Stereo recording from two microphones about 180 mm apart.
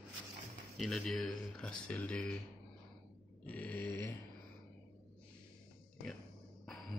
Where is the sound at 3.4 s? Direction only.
10° left (ahead or behind).